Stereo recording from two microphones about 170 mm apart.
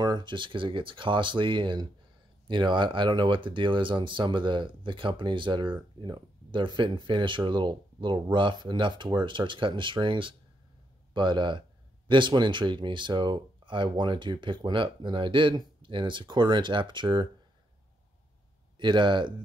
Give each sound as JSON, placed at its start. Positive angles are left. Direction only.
{"t": 0.0, "sound": "speech", "side_deg": -25}
{"t": 18.8, "sound": "speech", "side_deg": -25}